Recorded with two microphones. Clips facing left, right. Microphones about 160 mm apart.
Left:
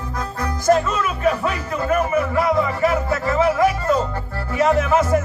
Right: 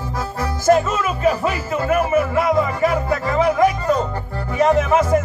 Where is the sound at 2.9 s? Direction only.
Centre (ahead or behind).